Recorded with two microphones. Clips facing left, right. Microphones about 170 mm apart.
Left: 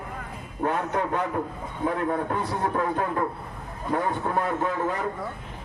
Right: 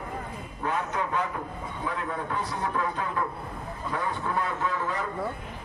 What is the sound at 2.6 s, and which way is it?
Vehicle, 50° left (ahead or behind).